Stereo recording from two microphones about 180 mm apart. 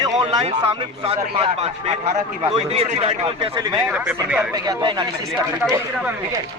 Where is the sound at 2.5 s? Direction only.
35° right (ahead or behind).